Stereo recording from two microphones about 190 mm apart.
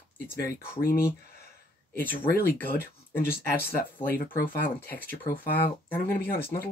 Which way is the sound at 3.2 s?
55° left (ahead or behind).